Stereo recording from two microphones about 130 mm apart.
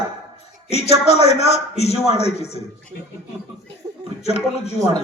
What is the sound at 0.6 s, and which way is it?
A man's voice, 55° left (ahead or behind).